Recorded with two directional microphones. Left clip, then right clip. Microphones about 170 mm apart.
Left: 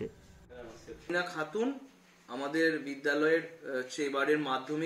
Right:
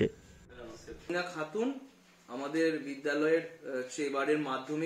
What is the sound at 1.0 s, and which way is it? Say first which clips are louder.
A man's voice: left 2 dB; centre (ahead or behind).